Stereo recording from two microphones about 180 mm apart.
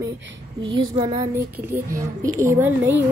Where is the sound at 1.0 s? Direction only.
25° right (ahead or behind).